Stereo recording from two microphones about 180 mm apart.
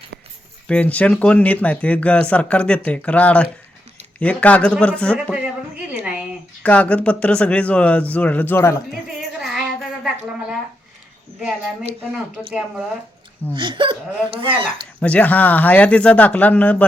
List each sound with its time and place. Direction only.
0.7 s speech: 5° left (ahead or behind)
5.9 s a sound: 5° right (ahead or behind)
6.6 s speech: 10° left (ahead or behind)
9.4 s music: centre (ahead or behind)
11.3 s a woman's voice: 5° right (ahead or behind)
13.6 s speech: 25° right (ahead or behind)
15.0 s speech: 10° left (ahead or behind)